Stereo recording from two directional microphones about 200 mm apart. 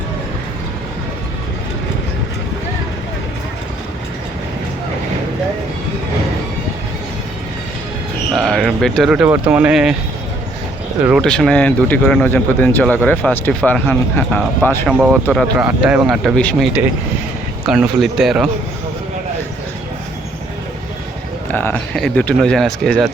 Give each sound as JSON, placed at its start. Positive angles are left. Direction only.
{"t": 8.3, "sound": "speech", "side_deg": 0}
{"t": 11.0, "sound": "speech", "side_deg": 0}
{"t": 14.9, "sound": "speech", "side_deg": -5}
{"t": 17.7, "sound": "speech", "side_deg": 0}
{"t": 21.5, "sound": "speech", "side_deg": 10}